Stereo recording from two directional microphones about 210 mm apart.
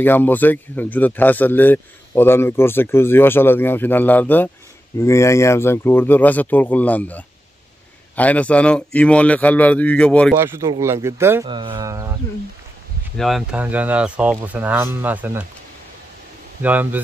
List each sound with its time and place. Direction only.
0.0 s speech: 10° left (ahead or behind)
10.3 s speech: 10° right (ahead or behind)
11.4 s speech: 20° right (ahead or behind)
13.2 s speech: centre (ahead or behind)
16.6 s speech: 10° right (ahead or behind)